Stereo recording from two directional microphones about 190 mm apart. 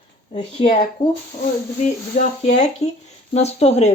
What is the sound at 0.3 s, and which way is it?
Speech, 35° left (ahead or behind).